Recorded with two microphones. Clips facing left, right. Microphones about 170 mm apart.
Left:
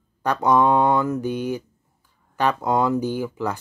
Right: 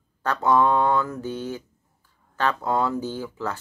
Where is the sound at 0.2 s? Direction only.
15° left (ahead or behind).